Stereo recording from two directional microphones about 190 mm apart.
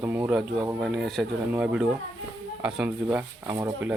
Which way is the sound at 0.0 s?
10° right (ahead or behind).